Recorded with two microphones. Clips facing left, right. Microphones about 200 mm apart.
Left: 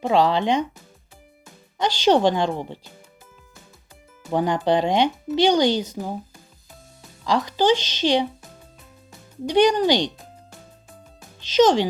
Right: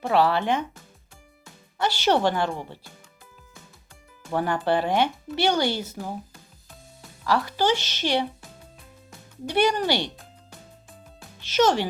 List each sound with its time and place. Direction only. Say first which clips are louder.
0.0 s speech: left 3 dB; 15° left (ahead or behind)
1.8 s speech: left 4 dB; 15° left (ahead or behind)
4.3 s speech: left 3 dB; 15° left (ahead or behind)
7.3 s speech: left 4 dB; 20° left (ahead or behind)
9.5 s speech: left 5 dB; 15° left (ahead or behind)
11.5 s speech: left 5 dB; 15° left (ahead or behind)